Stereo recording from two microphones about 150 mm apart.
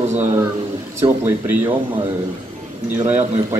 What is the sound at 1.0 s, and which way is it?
Speech, 10° right (ahead or behind).